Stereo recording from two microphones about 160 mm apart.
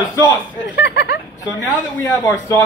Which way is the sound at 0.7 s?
90° left.